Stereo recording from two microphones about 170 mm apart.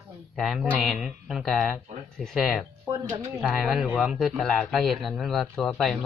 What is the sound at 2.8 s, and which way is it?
Speech, 20° right (ahead or behind).